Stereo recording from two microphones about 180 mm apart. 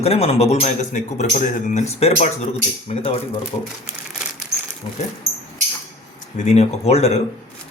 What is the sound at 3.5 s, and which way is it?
Speech, 25° left (ahead or behind).